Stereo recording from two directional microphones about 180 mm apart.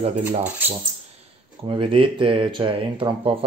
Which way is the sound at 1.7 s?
30° right (ahead or behind).